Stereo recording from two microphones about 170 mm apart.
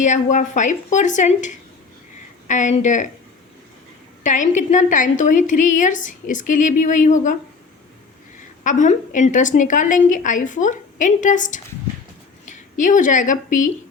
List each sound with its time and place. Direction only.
0.0 s a woman's voice: 45° left (ahead or behind)
4.2 s a woman's voice: 45° left (ahead or behind)
8.6 s a woman's voice: 45° left (ahead or behind)